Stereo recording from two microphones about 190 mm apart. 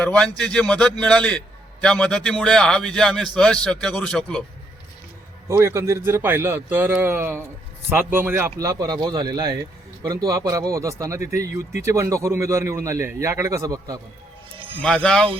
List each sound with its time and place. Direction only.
0.0 s a man's voice: 5° left (ahead or behind)
5.5 s a man's voice: 15° right (ahead or behind)
14.8 s a man's voice: 5° left (ahead or behind)